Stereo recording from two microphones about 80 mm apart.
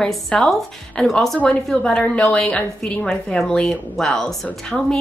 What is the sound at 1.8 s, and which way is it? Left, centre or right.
A woman's voice, centre.